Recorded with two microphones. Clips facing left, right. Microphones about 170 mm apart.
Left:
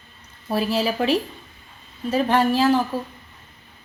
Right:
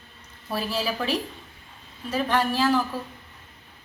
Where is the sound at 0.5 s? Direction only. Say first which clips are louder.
Left 6 dB; 25° left (ahead or behind).